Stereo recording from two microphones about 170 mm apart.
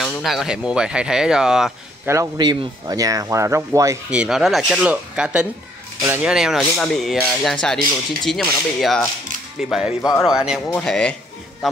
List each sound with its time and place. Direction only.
0.0 s speech: centre (ahead or behind)
2.0 s speech: 20° right (ahead or behind)
4.1 s speech: 5° right (ahead or behind)
6.2 s speech: 5° right (ahead or behind)